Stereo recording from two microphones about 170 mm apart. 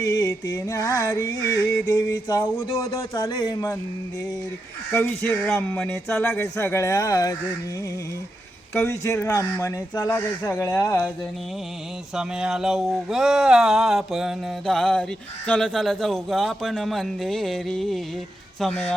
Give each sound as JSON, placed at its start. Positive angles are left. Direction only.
{"t": 0.0, "sound": "a sound", "side_deg": 20}
{"t": 4.9, "sound": "speech", "side_deg": 10}
{"t": 8.7, "sound": "speech", "side_deg": 15}
{"t": 12.1, "sound": "speech", "side_deg": -5}